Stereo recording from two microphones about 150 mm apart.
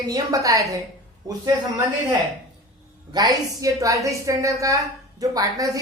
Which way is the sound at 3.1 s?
25° right (ahead or behind).